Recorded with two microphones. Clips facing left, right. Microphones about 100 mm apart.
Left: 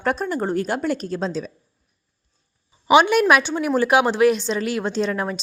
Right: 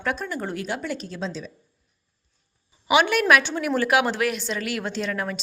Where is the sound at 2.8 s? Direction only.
25° left (ahead or behind).